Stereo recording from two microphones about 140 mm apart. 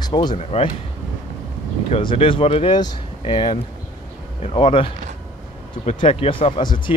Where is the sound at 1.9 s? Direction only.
35° left (ahead or behind).